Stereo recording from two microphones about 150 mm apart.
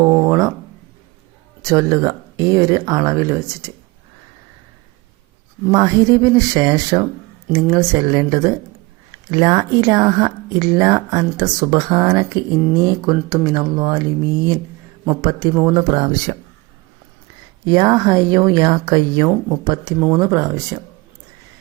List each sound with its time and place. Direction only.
0.0 s a sound: 20° right (ahead or behind)
1.6 s speech: 20° right (ahead or behind)
5.7 s speech: 25° right (ahead or behind)
17.7 s speech: 30° right (ahead or behind)